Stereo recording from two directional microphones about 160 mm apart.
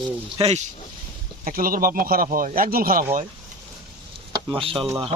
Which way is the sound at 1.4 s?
60° right (ahead or behind).